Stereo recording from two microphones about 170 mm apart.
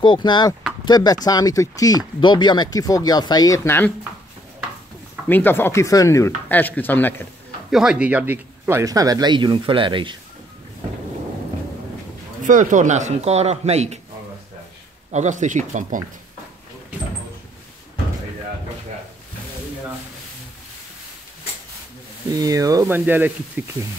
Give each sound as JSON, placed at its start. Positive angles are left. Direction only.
{"t": 0.0, "sound": "speech", "side_deg": 25}
{"t": 5.3, "sound": "speech", "side_deg": 10}
{"t": 7.7, "sound": "speech", "side_deg": -5}
{"t": 12.4, "sound": "speech", "side_deg": -50}
{"t": 15.0, "sound": "speech", "side_deg": -45}
{"t": 22.3, "sound": "speech", "side_deg": -20}